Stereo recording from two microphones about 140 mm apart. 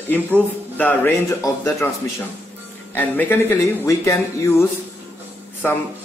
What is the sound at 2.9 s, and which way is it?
A man's voice, 10° left (ahead or behind).